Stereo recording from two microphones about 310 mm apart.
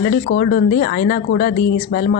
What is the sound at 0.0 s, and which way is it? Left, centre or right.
A woman's voice, left.